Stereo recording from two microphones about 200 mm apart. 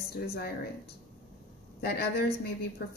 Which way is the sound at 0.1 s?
50° left (ahead or behind).